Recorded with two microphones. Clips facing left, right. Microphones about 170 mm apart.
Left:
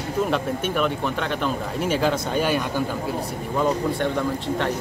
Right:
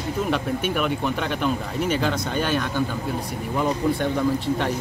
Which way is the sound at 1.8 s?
5° left (ahead or behind).